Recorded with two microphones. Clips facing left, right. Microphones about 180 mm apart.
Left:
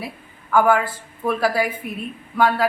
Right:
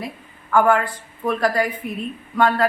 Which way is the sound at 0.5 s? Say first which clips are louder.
Even; 5° left (ahead or behind).